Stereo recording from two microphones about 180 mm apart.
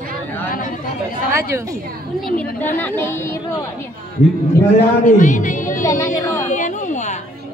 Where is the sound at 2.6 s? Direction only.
10° left (ahead or behind).